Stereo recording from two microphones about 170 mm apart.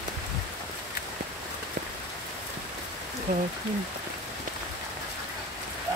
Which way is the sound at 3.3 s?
60° right (ahead or behind).